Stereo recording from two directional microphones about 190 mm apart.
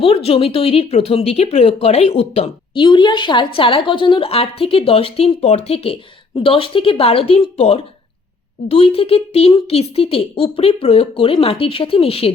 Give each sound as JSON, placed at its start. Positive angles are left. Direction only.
{"t": 0.0, "sound": "speech", "side_deg": 30}
{"t": 2.8, "sound": "a woman's voice", "side_deg": 25}